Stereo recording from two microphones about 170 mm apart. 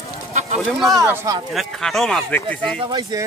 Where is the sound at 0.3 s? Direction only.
40° right (ahead or behind).